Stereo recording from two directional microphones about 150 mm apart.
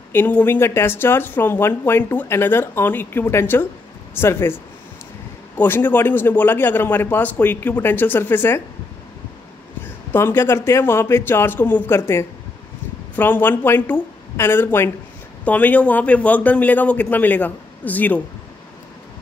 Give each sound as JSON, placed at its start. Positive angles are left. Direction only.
{"t": 0.1, "sound": "speech", "side_deg": 10}
{"t": 5.6, "sound": "speech", "side_deg": 15}
{"t": 10.1, "sound": "speech", "side_deg": 15}